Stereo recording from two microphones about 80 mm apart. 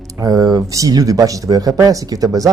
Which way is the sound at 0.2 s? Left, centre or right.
Right.